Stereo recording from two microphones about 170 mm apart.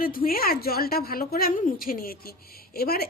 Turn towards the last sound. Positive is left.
turn(degrees=65)  # may be behind; listen again after turning